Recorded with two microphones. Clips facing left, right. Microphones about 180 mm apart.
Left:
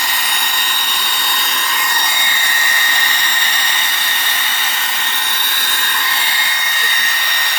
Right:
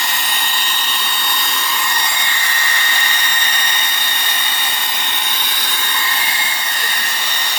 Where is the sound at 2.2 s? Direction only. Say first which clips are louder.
Left 1 dB; 20° left (ahead or behind).